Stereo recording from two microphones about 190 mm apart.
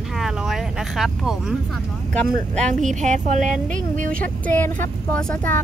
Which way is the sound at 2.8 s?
40° right (ahead or behind).